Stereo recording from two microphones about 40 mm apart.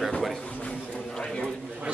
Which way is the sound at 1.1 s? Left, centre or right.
Left.